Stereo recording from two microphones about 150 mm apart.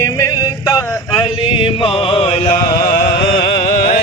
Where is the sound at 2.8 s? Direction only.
75° left (ahead or behind).